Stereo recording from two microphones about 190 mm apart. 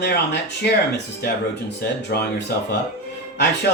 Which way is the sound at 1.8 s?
65° left (ahead or behind).